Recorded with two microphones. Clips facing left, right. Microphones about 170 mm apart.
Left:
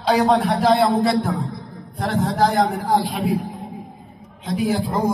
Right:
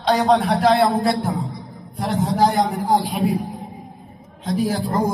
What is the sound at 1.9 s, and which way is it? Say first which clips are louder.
Speech: left 1 dB; 55° left (ahead or behind).